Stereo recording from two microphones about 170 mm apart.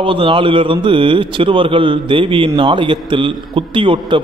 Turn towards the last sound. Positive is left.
turn(degrees=-30)  # may be behind; listen again after turning